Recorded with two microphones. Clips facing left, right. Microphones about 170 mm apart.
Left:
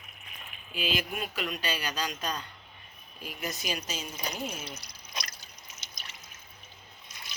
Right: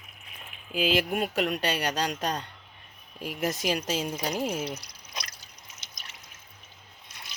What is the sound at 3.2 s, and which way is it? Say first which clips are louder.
Speech: right 8 dB; 80° right.